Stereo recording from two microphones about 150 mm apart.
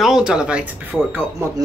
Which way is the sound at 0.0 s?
5° right (ahead or behind).